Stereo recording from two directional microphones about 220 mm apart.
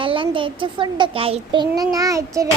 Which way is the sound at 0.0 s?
25° right (ahead or behind).